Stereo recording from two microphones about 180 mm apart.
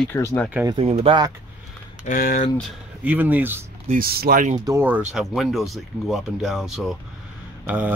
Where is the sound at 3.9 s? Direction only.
55° right (ahead or behind).